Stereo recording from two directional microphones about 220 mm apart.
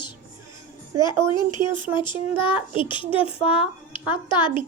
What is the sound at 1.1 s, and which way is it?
Speech, 10° right (ahead or behind).